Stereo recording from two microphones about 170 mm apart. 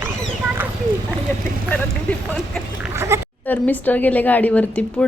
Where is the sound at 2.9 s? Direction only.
15° right (ahead or behind).